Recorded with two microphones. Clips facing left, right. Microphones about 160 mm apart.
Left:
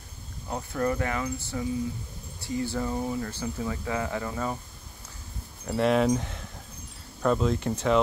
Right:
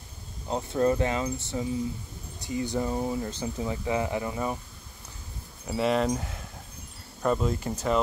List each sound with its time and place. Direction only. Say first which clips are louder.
0.5 s speech: right 4 dB; 25° right (ahead or behind)
5.7 s speech: left 2 dB; centre (ahead or behind)